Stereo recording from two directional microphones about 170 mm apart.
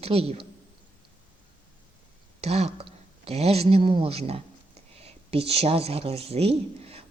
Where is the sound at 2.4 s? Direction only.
40° right (ahead or behind).